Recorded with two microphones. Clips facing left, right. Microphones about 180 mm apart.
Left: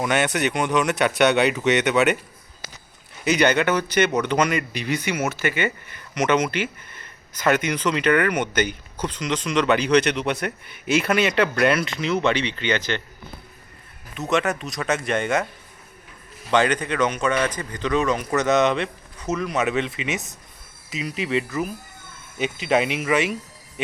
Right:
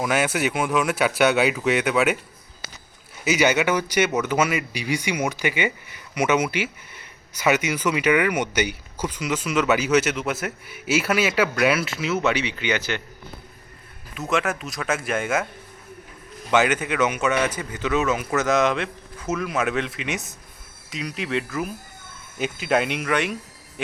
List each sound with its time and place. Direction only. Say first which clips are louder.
0.0 s speech: left 1 dB; centre (ahead or behind)
3.2 s speech: left 1 dB; 5° right (ahead or behind)
14.2 s speech: left 2 dB; centre (ahead or behind)
16.5 s speech: even; 10° right (ahead or behind)